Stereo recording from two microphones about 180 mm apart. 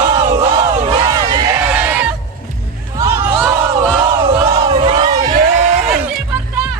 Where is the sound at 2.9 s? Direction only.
15° right (ahead or behind).